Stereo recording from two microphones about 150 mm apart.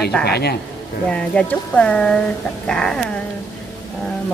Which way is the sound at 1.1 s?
10° left (ahead or behind).